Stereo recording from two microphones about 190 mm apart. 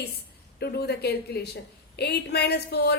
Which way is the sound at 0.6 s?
60° left (ahead or behind).